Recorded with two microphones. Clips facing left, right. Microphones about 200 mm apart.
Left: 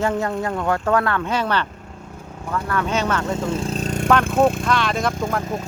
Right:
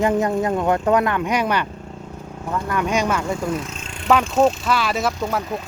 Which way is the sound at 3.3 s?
25° left (ahead or behind).